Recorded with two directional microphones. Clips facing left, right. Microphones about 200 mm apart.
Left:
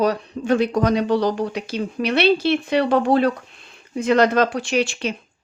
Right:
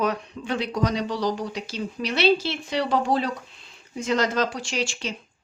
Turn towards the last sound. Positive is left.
turn(degrees=60)  # may be behind; listen again after turning